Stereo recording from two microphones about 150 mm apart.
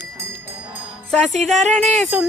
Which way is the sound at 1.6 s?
50° right (ahead or behind).